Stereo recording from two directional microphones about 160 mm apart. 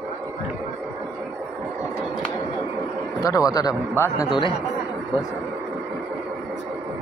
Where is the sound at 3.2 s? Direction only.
20° left (ahead or behind).